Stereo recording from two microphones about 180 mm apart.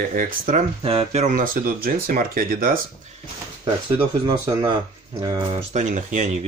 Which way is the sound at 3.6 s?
30° right (ahead or behind).